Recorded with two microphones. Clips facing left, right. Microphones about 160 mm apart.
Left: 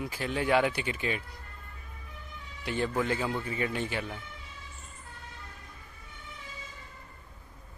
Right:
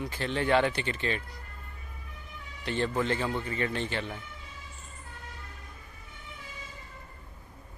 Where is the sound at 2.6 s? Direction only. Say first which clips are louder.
Right 1 dB; 10° left (ahead or behind).